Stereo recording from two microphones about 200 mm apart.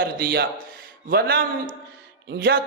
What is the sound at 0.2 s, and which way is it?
Speech, 45° right (ahead or behind).